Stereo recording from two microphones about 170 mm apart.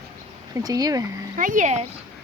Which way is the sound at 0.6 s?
20° right (ahead or behind).